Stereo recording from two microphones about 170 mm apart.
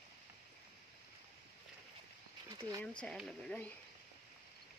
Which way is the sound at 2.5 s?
20° right (ahead or behind).